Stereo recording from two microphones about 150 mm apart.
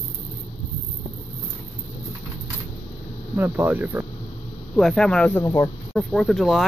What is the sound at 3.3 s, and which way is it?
Speech, 15° right (ahead or behind).